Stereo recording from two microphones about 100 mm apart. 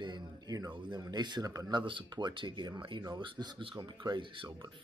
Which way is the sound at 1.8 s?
50° right (ahead or behind).